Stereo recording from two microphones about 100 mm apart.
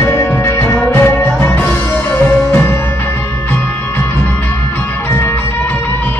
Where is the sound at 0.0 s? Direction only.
25° left (ahead or behind).